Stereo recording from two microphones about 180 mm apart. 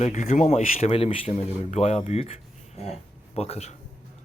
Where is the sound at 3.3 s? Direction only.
35° left (ahead or behind).